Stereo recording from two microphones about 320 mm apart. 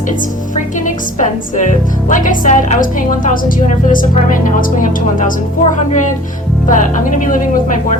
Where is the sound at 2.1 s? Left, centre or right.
Left.